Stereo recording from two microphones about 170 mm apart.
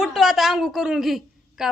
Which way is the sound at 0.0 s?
Centre (ahead or behind).